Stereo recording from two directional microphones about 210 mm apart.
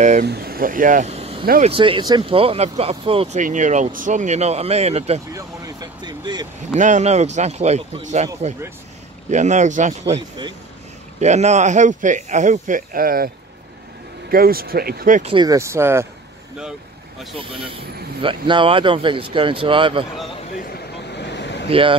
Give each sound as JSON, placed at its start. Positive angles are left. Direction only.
{"t": 0.2, "sound": "speech", "side_deg": -50}
{"t": 1.4, "sound": "speech", "side_deg": -45}
{"t": 1.7, "sound": "speech", "side_deg": -25}
{"t": 5.3, "sound": "speech", "side_deg": -20}
{"t": 6.7, "sound": "speech", "side_deg": -35}
{"t": 9.3, "sound": "speech", "side_deg": -35}
{"t": 14.3, "sound": "speech", "side_deg": -45}
{"t": 15.3, "sound": "speech", "side_deg": -15}
{"t": 18.5, "sound": "speech", "side_deg": -25}
{"t": 21.1, "sound": "vehicle", "side_deg": 55}
{"t": 21.6, "sound": "speech", "side_deg": -25}